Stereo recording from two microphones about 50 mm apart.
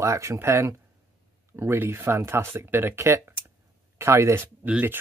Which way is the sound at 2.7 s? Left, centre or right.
Right.